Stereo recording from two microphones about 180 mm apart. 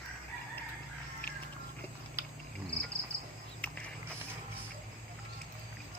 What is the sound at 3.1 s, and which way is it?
Cricket, 30° left (ahead or behind).